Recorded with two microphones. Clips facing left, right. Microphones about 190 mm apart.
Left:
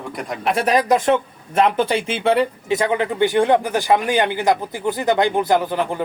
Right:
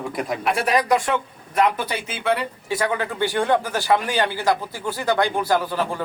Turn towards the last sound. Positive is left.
turn(degrees=20)  # may be behind; listen again after turning